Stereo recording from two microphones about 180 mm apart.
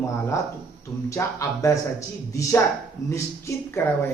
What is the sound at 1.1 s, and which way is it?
Speech, 15° left (ahead or behind).